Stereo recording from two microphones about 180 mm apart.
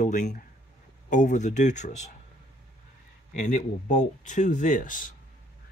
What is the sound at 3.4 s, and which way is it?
Speech, 45° left (ahead or behind).